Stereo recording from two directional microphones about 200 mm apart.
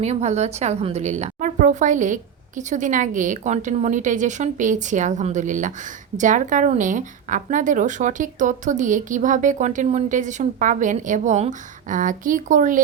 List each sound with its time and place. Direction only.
0.0 s a woman's voice: 35° right (ahead or behind)